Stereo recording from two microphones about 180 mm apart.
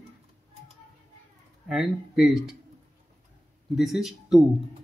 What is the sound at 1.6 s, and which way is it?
Speech, centre (ahead or behind).